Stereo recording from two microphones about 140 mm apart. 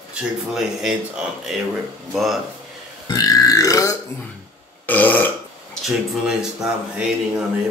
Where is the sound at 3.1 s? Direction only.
25° left (ahead or behind).